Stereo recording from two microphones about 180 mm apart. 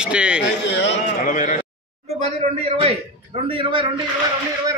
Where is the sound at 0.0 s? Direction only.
5° right (ahead or behind).